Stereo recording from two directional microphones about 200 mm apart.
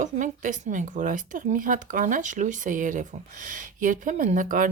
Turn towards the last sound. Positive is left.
turn(degrees=-40)  # may be behind; listen again after turning